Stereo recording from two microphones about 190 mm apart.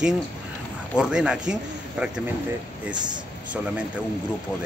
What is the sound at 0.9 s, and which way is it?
A man's voice, 5° right (ahead or behind).